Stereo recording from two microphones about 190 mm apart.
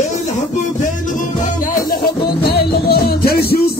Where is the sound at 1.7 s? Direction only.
50° left (ahead or behind).